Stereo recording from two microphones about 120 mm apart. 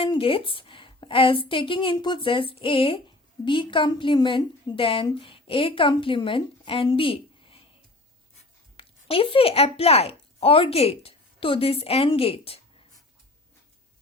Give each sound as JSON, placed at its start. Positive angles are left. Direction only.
{"t": 0.0, "sound": "a woman's voice", "side_deg": 50}
{"t": 8.7, "sound": "speech", "side_deg": 50}